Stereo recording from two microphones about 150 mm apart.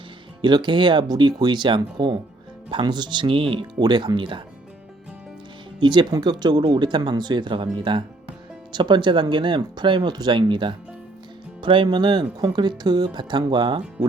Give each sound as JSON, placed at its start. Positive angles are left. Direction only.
{"t": 0.4, "sound": "speech", "side_deg": -30}
{"t": 5.8, "sound": "speech", "side_deg": -30}